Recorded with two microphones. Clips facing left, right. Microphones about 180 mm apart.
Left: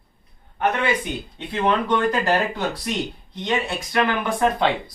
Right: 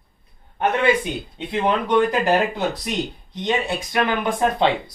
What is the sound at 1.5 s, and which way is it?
Speech, 15° right (ahead or behind).